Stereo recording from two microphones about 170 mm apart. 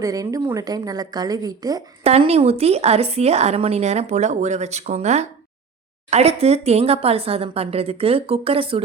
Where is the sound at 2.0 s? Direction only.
35° right (ahead or behind).